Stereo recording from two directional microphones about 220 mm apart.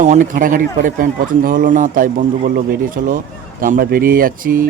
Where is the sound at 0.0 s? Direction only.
35° right (ahead or behind).